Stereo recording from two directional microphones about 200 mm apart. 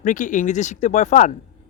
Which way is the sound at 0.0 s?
40° left (ahead or behind).